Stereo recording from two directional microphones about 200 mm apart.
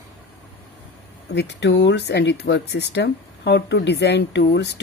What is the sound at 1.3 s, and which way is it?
Speech, 55° left (ahead or behind).